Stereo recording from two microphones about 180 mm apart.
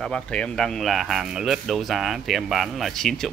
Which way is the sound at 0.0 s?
5° left (ahead or behind).